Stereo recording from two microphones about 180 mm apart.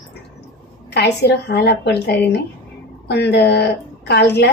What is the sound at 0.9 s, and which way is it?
A woman's voice, 65° left (ahead or behind).